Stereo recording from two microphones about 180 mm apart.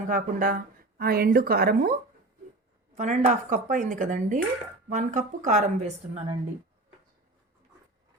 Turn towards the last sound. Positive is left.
turn(degrees=-40)  # may be behind; listen again after turning